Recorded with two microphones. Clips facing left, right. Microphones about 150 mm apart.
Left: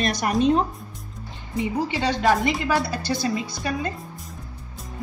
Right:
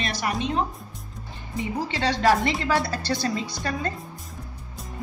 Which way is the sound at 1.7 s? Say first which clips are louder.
Left 1 dB; 10° left (ahead or behind).